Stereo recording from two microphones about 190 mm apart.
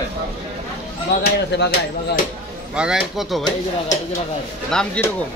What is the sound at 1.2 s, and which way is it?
Speech, 65° left (ahead or behind).